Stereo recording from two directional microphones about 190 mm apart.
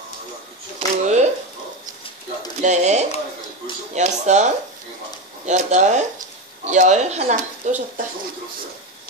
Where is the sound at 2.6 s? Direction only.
40° right (ahead or behind).